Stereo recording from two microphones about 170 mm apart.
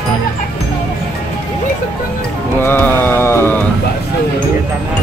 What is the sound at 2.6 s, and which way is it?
Mantra, 10° left (ahead or behind).